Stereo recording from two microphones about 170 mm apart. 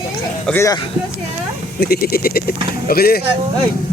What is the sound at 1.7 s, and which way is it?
Speech, 65° left (ahead or behind).